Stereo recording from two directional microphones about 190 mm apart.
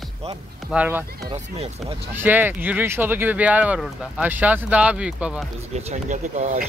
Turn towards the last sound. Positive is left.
turn(degrees=-40)  # may be behind; listen again after turning